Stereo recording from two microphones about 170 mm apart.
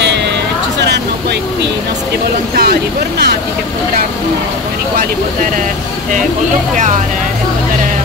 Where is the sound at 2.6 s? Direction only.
65° right (ahead or behind).